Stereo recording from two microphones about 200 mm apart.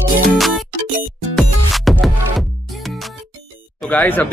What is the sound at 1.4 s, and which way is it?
Music, centre (ahead or behind).